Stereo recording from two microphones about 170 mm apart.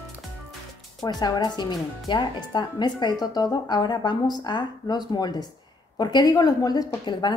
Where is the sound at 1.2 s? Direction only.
25° left (ahead or behind).